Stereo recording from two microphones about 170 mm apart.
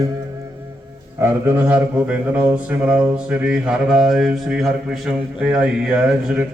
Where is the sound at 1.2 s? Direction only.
10° right (ahead or behind).